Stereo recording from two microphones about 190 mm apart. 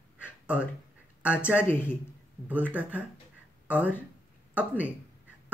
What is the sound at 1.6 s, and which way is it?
Speech, 10° left (ahead or behind).